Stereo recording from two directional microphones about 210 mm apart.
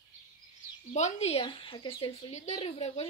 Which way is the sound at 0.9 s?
30° left (ahead or behind).